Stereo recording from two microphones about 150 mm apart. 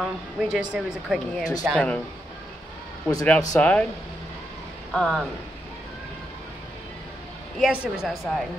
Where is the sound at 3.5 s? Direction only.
10° left (ahead or behind).